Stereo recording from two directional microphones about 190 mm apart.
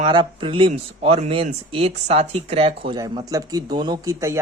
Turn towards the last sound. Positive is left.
turn(degrees=-15)  # may be behind; listen again after turning